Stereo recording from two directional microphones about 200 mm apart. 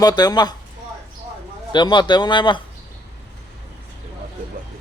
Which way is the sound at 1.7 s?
20° left (ahead or behind).